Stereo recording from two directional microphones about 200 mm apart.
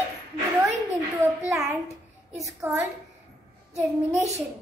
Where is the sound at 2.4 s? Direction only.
10° right (ahead or behind).